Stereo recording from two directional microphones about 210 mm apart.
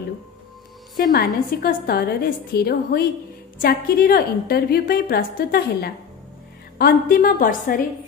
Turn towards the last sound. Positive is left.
turn(degrees=40)  # may be behind; listen again after turning